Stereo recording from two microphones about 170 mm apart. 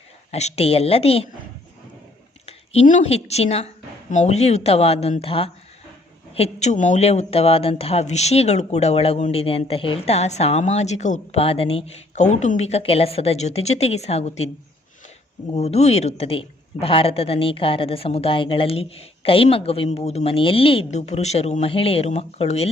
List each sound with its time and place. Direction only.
0.3 s speech: 40° left (ahead or behind)
2.5 s a woman's voice: 40° left (ahead or behind)
15.5 s speech: 40° left (ahead or behind)